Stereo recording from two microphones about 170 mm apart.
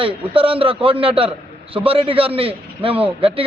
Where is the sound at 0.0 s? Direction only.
30° right (ahead or behind).